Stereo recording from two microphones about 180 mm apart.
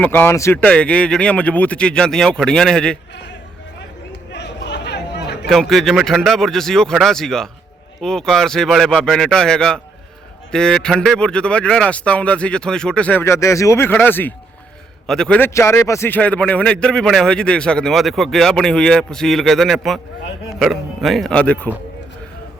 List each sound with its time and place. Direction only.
0.0 s speech: 10° left (ahead or behind)
4.3 s chatter: 70° left (ahead or behind)
5.5 s a man's voice: centre (ahead or behind)